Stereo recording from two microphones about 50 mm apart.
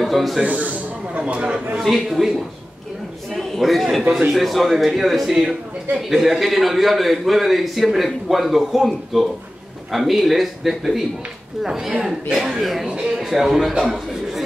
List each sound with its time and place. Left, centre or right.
0.0 s speech: centre
0.4 s a sound: right
1.3 s speech: right
2.0 s a man's voice: centre
3.3 s a man's voice: centre